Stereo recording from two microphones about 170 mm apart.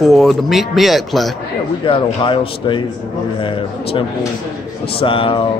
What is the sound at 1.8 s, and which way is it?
A man's voice, 30° left (ahead or behind).